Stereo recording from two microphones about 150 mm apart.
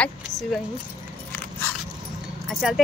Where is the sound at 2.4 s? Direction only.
Centre (ahead or behind).